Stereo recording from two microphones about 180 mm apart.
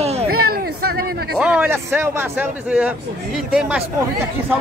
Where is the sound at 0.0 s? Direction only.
35° right (ahead or behind).